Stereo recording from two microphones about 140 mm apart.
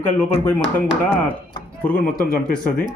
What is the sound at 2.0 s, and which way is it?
Speech, 90° left.